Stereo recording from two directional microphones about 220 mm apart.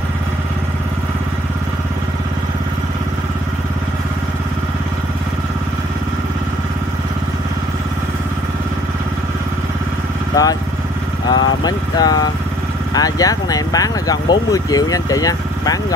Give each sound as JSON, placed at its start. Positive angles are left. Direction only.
{"t": 10.3, "sound": "motorcycle", "side_deg": 15}
{"t": 11.2, "sound": "vehicle", "side_deg": 20}
{"t": 12.9, "sound": "speech", "side_deg": 15}